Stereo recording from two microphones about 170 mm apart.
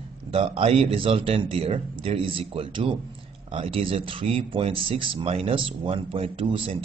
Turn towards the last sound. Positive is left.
turn(degrees=-30)  # may be behind; listen again after turning